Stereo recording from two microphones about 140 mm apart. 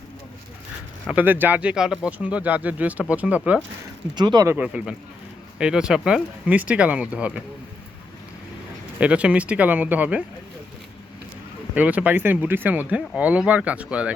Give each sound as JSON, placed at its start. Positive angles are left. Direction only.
{"t": 1.0, "sound": "speech", "side_deg": -10}
{"t": 4.1, "sound": "speech", "side_deg": -30}
{"t": 4.4, "sound": "speech", "side_deg": -10}
{"t": 9.0, "sound": "speech", "side_deg": -10}
{"t": 11.7, "sound": "speech", "side_deg": -10}